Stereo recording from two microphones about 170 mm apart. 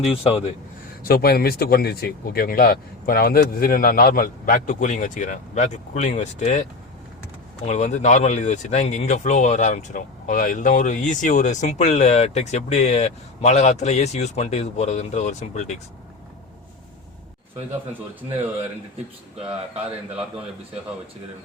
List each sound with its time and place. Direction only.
0.0 s speech: 35° left (ahead or behind)
1.0 s speech: 65° left (ahead or behind); by 6.7 s 40° left (ahead or behind)
7.7 s speech: 45° left (ahead or behind)